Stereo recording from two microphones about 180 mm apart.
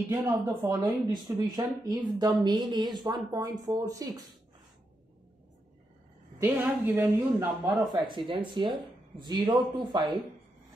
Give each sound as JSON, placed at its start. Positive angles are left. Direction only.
{"t": 0.1, "sound": "speech", "side_deg": -20}
{"t": 6.4, "sound": "speech", "side_deg": -10}